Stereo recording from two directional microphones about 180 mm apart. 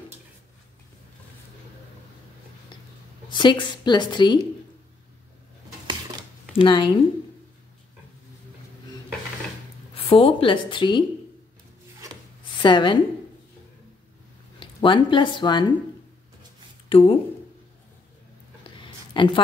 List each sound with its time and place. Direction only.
3.3 s a woman's voice: 25° left (ahead or behind)
6.5 s a woman's voice: 30° left (ahead or behind)
9.9 s a woman's voice: 30° left (ahead or behind)
12.6 s a woman's voice: 25° left (ahead or behind)
14.6 s speech: 25° left (ahead or behind)
16.9 s speech: 30° left (ahead or behind)
18.8 s a sound: 25° left (ahead or behind)